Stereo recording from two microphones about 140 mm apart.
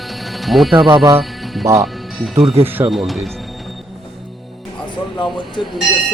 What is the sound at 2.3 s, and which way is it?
Speech, 45° right (ahead or behind).